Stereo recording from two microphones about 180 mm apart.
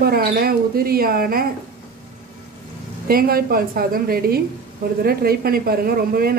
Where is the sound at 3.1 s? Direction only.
55° right (ahead or behind).